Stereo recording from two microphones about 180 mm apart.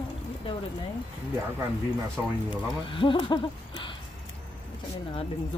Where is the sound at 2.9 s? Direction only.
25° left (ahead or behind).